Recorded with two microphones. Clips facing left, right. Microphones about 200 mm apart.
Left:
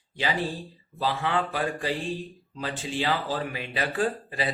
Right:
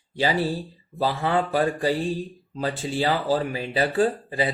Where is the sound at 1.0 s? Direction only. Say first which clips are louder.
Right 4 dB; 35° right (ahead or behind).